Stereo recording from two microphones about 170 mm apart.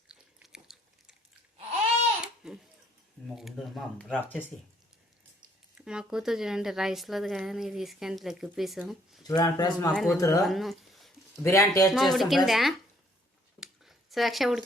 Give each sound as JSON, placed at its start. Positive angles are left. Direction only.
{"t": 0.1, "sound": "biting", "side_deg": -5}
{"t": 2.2, "sound": "babbling", "side_deg": -5}
{"t": 3.3, "sound": "a woman's voice", "side_deg": 0}
{"t": 5.7, "sound": "a woman's voice", "side_deg": -5}
{"t": 9.2, "sound": "speech", "side_deg": 20}
{"t": 9.9, "sound": "a woman's voice", "side_deg": 0}
{"t": 10.2, "sound": "speech", "side_deg": 20}
{"t": 10.4, "sound": "speech", "side_deg": 0}
{"t": 11.4, "sound": "a man's voice", "side_deg": 15}
{"t": 11.9, "sound": "a woman's voice", "side_deg": 0}
{"t": 13.6, "sound": "a sound", "side_deg": 0}